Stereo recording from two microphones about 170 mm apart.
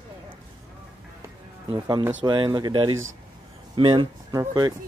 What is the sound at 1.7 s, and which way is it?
Speech, 25° right (ahead or behind).